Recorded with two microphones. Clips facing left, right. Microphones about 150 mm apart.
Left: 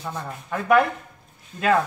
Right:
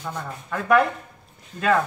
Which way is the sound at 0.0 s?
10° left (ahead or behind).